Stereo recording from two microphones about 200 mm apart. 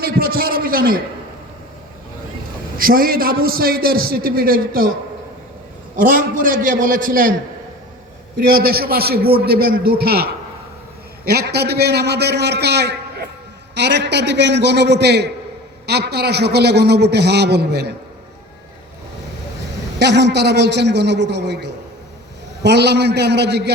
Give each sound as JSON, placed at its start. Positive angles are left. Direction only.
{"t": 0.0, "sound": "a man's voice", "side_deg": -45}
{"t": 2.7, "sound": "a man's voice", "side_deg": -45}
{"t": 6.0, "sound": "a man's voice", "side_deg": -45}
{"t": 8.4, "sound": "a man's voice", "side_deg": -50}
{"t": 11.3, "sound": "a man's voice", "side_deg": -55}
{"t": 20.0, "sound": "a man's voice", "side_deg": -60}